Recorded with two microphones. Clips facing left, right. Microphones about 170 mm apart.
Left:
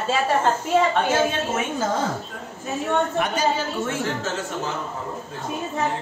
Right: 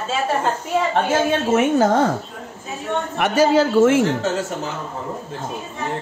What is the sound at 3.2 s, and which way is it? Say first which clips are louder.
Speech: right 7 dB; 90° right.